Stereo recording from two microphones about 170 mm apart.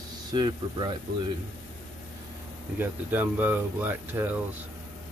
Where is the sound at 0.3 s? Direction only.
25° right (ahead or behind).